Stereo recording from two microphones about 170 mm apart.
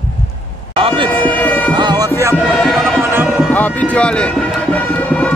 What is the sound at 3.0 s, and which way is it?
Music, 15° right (ahead or behind).